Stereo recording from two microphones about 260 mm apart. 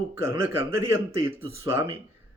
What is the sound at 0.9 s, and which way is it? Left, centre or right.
Speech, left.